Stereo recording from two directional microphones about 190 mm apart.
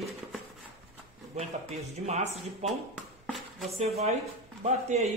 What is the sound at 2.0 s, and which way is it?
Speech, 35° right (ahead or behind).